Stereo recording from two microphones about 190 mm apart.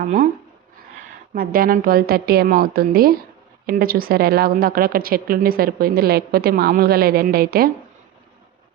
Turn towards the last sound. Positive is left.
turn(degrees=-50)  # may be behind; listen again after turning